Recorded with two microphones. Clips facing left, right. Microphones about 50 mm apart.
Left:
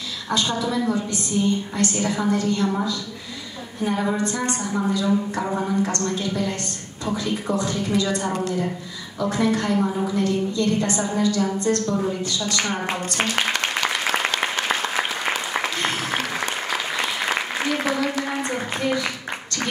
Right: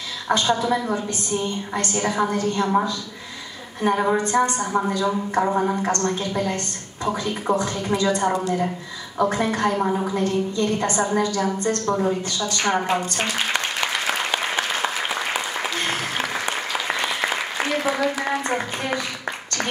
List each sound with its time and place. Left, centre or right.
0.3 s a woman's voice: right
14.0 s applause: centre
18.2 s a sound: right